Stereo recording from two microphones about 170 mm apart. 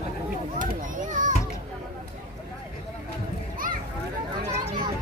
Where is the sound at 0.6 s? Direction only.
50° right (ahead or behind).